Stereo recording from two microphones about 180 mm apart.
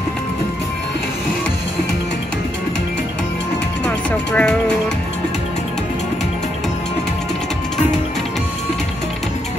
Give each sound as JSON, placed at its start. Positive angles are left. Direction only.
{"t": 3.8, "sound": "music", "side_deg": 5}